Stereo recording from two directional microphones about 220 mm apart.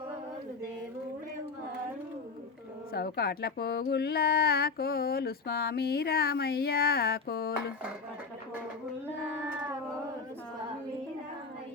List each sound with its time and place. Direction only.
2.9 s speech: 45° left (ahead or behind)